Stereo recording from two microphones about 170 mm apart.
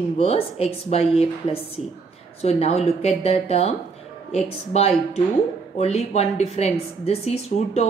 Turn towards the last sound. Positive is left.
turn(degrees=40)  # may be behind; listen again after turning